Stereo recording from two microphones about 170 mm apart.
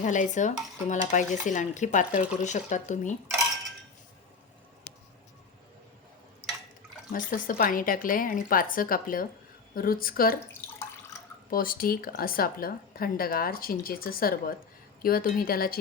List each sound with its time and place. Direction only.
0.0 s stir: 50° left (ahead or behind)
7.1 s speech: 50° left (ahead or behind)
11.1 s drip: 15° left (ahead or behind)
11.5 s speech: 55° left (ahead or behind)